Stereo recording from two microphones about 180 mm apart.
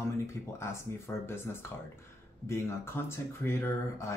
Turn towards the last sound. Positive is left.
turn(degrees=15)  # may be behind; listen again after turning